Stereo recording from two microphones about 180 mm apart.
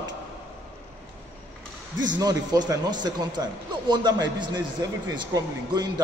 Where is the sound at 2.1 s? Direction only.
20° right (ahead or behind).